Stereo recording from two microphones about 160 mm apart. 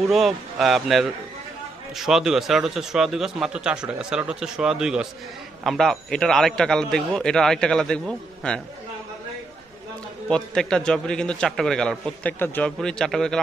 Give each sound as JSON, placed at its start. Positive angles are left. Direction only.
{"t": 0.1, "sound": "a man's voice", "side_deg": 0}
{"t": 10.2, "sound": "a man's voice", "side_deg": 5}